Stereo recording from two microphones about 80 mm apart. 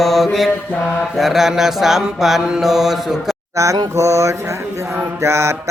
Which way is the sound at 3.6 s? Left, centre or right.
Right.